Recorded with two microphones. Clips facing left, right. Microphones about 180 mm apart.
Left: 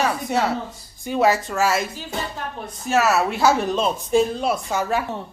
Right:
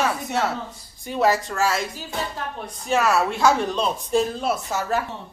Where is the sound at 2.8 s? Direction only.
5° left (ahead or behind).